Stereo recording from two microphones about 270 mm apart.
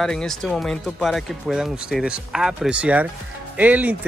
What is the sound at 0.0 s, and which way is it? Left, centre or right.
Speech, centre.